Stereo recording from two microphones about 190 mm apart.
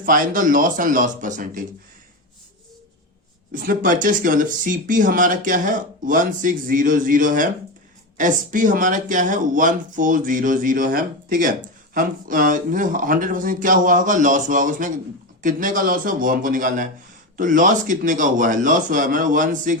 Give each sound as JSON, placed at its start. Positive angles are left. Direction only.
{"t": 0.0, "sound": "speech", "side_deg": -45}
{"t": 3.5, "sound": "speech", "side_deg": -45}